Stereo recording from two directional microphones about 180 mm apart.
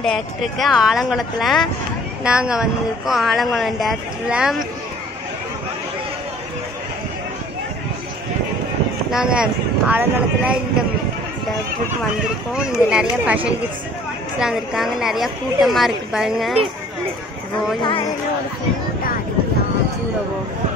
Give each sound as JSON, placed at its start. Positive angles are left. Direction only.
{"t": 0.0, "sound": "speech", "side_deg": 0}
{"t": 9.1, "sound": "speech", "side_deg": -5}
{"t": 12.5, "sound": "speech", "side_deg": -5}